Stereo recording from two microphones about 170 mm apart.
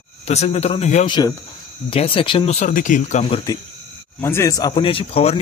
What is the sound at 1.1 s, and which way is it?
A man's voice, 25° left (ahead or behind).